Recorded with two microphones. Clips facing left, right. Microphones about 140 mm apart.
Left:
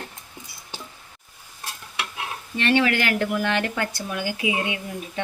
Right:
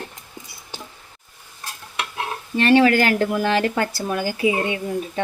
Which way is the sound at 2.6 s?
40° right (ahead or behind).